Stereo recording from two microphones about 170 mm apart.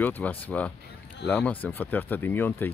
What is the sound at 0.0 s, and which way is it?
Speech, 10° left (ahead or behind).